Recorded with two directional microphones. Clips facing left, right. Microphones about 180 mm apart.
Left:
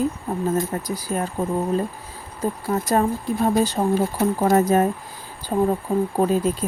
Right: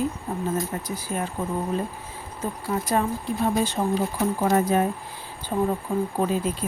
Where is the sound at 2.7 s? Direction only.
40° left (ahead or behind).